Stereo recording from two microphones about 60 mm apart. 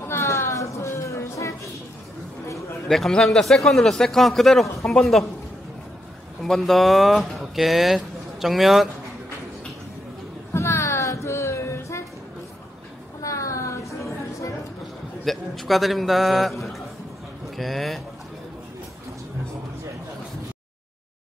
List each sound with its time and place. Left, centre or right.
0.1 s music: left
2.9 s speech: centre
6.4 s speech: centre
10.5 s a sound: left
13.2 s a sound: left
15.2 s a man's voice: centre